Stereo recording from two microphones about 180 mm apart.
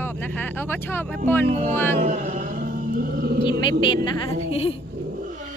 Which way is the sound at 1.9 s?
45° right (ahead or behind).